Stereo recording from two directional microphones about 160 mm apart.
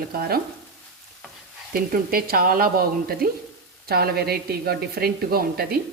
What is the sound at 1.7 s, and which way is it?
A woman's voice, 65° right (ahead or behind).